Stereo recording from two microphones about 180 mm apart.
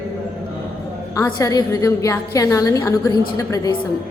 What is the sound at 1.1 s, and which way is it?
A woman's voice, 20° left (ahead or behind).